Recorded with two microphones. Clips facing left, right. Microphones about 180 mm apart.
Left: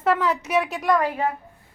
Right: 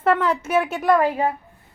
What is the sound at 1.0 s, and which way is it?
Speech, 30° right (ahead or behind).